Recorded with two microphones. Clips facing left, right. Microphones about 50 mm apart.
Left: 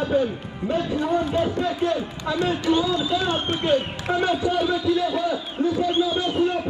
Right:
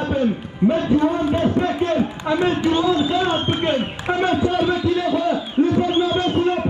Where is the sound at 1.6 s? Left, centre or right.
Right.